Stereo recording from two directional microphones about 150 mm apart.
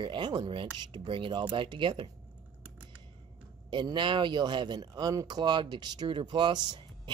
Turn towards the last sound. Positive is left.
turn(degrees=-30)  # may be behind; listen again after turning